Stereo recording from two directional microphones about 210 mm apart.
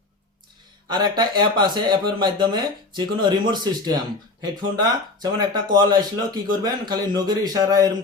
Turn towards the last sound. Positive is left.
turn(degrees=-20)  # may be behind; listen again after turning